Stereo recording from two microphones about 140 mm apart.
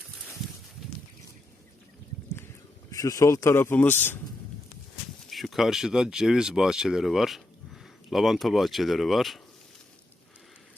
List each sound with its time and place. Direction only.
2.9 s speech: 25° left (ahead or behind)
5.3 s speech: centre (ahead or behind)